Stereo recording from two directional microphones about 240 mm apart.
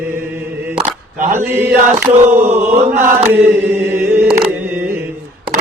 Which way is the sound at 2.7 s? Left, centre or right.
Right.